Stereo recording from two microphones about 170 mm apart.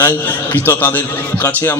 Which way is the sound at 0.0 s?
10° left (ahead or behind).